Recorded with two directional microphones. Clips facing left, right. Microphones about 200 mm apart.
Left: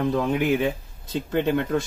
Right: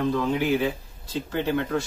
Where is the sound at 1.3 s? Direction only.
20° left (ahead or behind).